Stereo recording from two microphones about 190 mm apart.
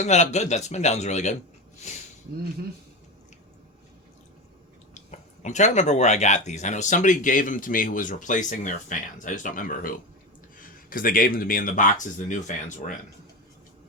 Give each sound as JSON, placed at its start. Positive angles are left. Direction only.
{"t": 0.0, "sound": "speech", "side_deg": 35}
{"t": 4.9, "sound": "speech", "side_deg": 40}